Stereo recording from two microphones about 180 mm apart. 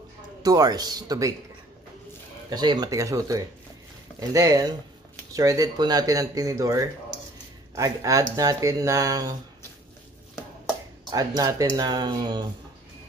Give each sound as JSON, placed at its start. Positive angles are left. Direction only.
{"t": 0.4, "sound": "speech", "side_deg": -20}
{"t": 2.5, "sound": "speech", "side_deg": -25}
{"t": 11.1, "sound": "speech", "side_deg": -20}